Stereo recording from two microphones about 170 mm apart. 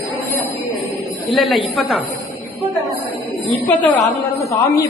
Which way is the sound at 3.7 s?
10° left (ahead or behind).